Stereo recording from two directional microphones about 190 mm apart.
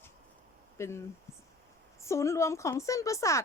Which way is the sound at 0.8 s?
15° left (ahead or behind).